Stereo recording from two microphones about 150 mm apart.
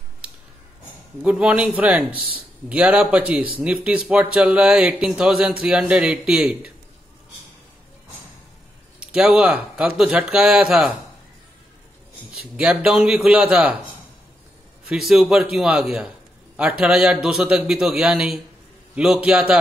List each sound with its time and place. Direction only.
1.2 s speech: 5° right (ahead or behind)
9.0 s speech: 5° right (ahead or behind)
12.4 s speech: 5° right (ahead or behind)
14.9 s speech: centre (ahead or behind)